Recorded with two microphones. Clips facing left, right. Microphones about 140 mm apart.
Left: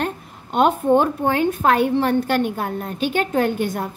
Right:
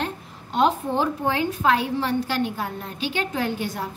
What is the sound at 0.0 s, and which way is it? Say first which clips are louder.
A woman's voice: left 4 dB; 55° left (ahead or behind).